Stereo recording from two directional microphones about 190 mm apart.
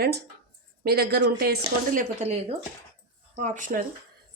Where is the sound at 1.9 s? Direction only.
35° right (ahead or behind).